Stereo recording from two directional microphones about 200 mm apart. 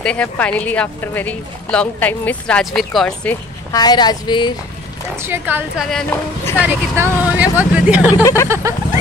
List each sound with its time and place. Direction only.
0.0 s speech: 5° left (ahead or behind)
3.7 s a woman's voice: 20° left (ahead or behind)
5.1 s speech: 10° right (ahead or behind)
5.9 s speech: 5° left (ahead or behind)
6.6 s speech: 5° right (ahead or behind)
8.2 s speech: 15° left (ahead or behind)